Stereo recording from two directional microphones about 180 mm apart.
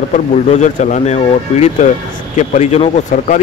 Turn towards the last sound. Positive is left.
turn(degrees=40)  # may be behind; listen again after turning